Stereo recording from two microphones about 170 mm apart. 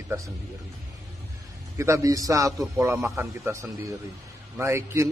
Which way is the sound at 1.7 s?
15° right (ahead or behind).